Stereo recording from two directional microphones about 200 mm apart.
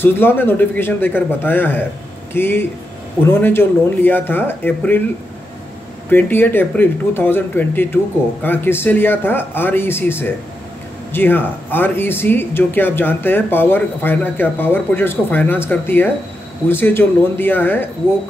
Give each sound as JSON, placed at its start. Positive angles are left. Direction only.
{"t": 0.0, "sound": "speech", "side_deg": 10}
{"t": 6.0, "sound": "speech", "side_deg": 10}